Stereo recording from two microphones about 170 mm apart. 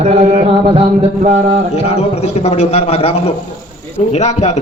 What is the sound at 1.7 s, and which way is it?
A man's voice, 40° left (ahead or behind).